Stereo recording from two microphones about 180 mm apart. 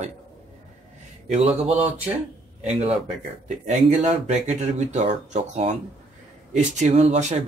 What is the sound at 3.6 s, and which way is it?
Speech, 40° right (ahead or behind).